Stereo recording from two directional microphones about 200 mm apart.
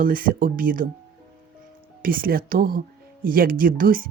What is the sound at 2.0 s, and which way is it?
Speech, 45° right (ahead or behind).